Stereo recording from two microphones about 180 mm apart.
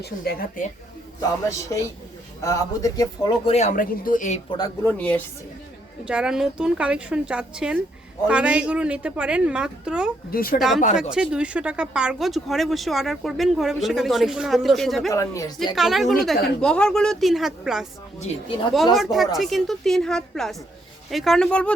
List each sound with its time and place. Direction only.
0.0 s a woman's voice: 55° left (ahead or behind)
1.5 s speech: 15° left (ahead or behind); by 4.4 s 45° left (ahead or behind)
4.5 s speech: 20° left (ahead or behind)
4.9 s speech: 5° left (ahead or behind)
6.1 s a woman's voice: 5° right (ahead or behind)
10.3 s a woman's voice: 55° left (ahead or behind)
11.1 s speech: 5° right (ahead or behind)
15.1 s speech: 15° left (ahead or behind)
15.7 s speech: centre (ahead or behind)
18.2 s speech: 35° left (ahead or behind)
18.9 s speech: centre (ahead or behind)